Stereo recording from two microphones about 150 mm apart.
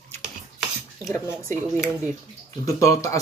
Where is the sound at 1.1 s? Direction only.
20° left (ahead or behind).